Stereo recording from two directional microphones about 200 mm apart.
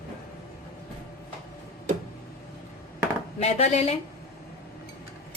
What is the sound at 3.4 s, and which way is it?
Speech, 30° left (ahead or behind).